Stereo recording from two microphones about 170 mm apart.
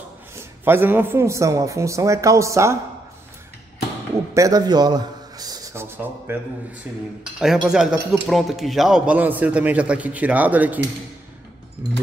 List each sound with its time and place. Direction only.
0.4 s speech: 15° right (ahead or behind)
4.3 s a sound: 20° right (ahead or behind)
7.3 s speech: centre (ahead or behind)